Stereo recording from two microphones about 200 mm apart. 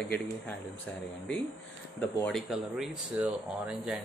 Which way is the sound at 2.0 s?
5° left (ahead or behind).